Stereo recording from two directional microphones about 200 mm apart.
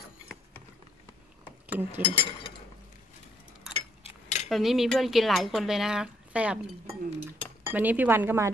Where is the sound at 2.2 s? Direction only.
25° left (ahead or behind).